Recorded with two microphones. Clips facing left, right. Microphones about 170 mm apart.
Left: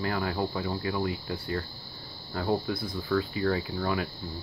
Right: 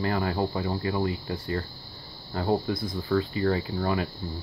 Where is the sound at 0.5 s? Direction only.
15° right (ahead or behind).